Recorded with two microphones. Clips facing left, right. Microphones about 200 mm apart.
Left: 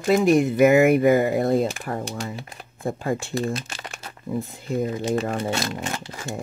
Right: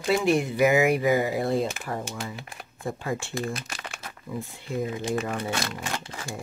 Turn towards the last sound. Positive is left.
turn(degrees=25)  # may be behind; listen again after turning